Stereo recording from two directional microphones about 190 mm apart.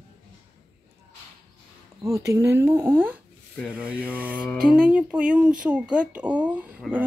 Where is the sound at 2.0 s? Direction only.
15° right (ahead or behind).